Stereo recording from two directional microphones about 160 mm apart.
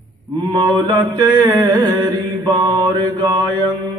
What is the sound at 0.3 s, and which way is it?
Mantra, 25° right (ahead or behind).